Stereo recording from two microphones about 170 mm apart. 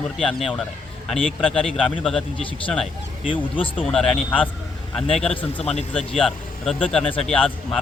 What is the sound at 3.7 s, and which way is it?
Speech, centre (ahead or behind).